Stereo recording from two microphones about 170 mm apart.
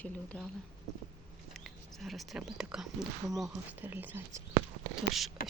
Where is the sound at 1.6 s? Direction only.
Centre (ahead or behind); by 4.4 s 15° right (ahead or behind).